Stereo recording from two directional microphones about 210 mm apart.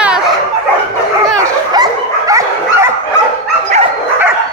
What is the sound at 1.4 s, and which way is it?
Dog, 15° right (ahead or behind).